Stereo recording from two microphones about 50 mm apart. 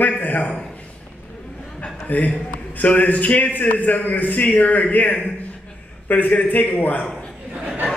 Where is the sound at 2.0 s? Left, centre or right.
Left.